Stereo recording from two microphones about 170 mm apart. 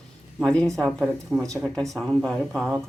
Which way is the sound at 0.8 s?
15° right (ahead or behind).